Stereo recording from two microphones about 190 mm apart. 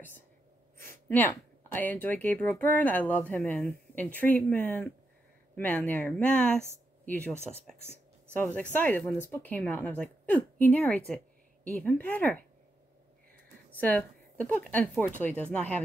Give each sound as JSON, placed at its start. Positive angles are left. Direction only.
{"t": 0.7, "sound": "speech", "side_deg": 10}
{"t": 7.3, "sound": "speech", "side_deg": 35}
{"t": 8.4, "sound": "speech", "side_deg": 10}
{"t": 13.7, "sound": "speech", "side_deg": 10}